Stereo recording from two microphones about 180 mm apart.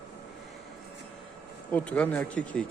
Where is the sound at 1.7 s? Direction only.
10° left (ahead or behind).